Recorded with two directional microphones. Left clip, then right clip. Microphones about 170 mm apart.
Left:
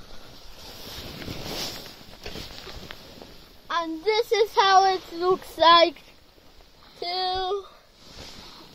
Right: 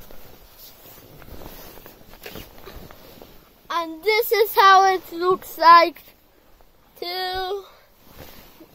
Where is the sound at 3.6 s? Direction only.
35° right (ahead or behind).